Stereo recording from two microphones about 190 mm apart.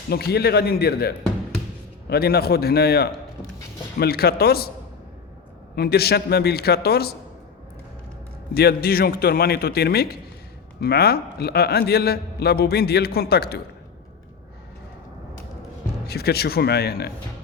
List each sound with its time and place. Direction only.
0.1 s a man's voice: 55° left (ahead or behind)
5.7 s a man's voice: 55° left (ahead or behind)
8.5 s a man's voice: 55° left (ahead or behind)
16.0 s a man's voice: 55° left (ahead or behind)